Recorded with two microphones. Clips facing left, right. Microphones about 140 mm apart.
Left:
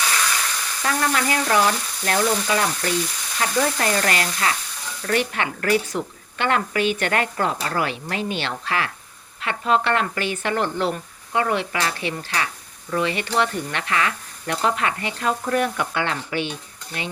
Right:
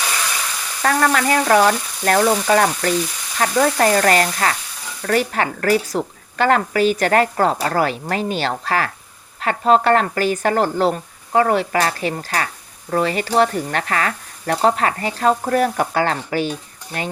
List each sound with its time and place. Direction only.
0.8 s frying: 55° right (ahead or behind)
5.0 s speech: 40° right (ahead or behind)